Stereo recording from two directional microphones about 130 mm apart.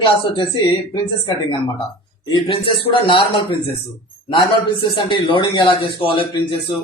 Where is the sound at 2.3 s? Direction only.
40° left (ahead or behind).